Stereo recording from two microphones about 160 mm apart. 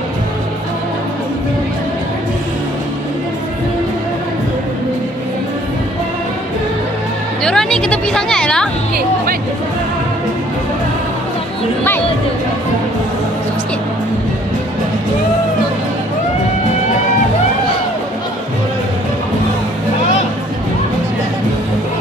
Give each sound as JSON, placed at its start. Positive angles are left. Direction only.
{"t": 7.4, "sound": "music", "side_deg": 5}
{"t": 8.9, "sound": "music", "side_deg": -65}